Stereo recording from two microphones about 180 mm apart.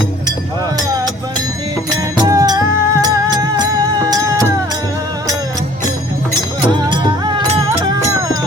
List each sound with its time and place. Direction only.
2.0 s music: 20° right (ahead or behind)
6.7 s music: 25° right (ahead or behind)